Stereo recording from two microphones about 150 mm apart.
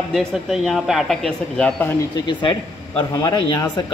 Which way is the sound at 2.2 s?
30° left (ahead or behind).